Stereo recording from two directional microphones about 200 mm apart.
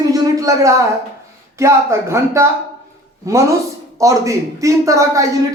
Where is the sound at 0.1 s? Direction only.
15° right (ahead or behind).